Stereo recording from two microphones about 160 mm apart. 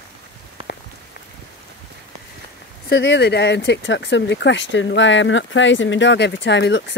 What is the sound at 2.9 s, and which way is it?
Speech, 90° left.